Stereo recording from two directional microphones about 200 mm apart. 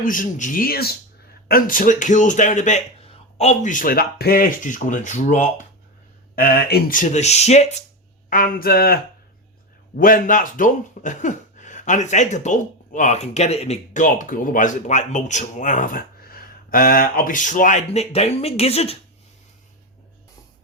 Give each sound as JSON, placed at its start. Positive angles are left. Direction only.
{"t": 0.0, "sound": "speech", "side_deg": 45}
{"t": 6.3, "sound": "speech", "side_deg": 50}
{"t": 8.3, "sound": "speech", "side_deg": 45}
{"t": 10.0, "sound": "speech", "side_deg": 45}